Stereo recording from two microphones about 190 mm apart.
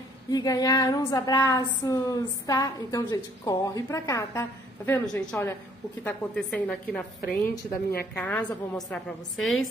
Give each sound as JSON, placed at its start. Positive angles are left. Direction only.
{"t": 0.3, "sound": "a sound", "side_deg": 20}
{"t": 6.0, "sound": "a woman's voice", "side_deg": 5}
{"t": 7.2, "sound": "a woman's voice", "side_deg": 55}
{"t": 8.1, "sound": "a woman's voice", "side_deg": 5}